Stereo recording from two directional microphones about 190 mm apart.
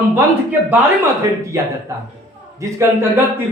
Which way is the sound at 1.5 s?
15° right (ahead or behind).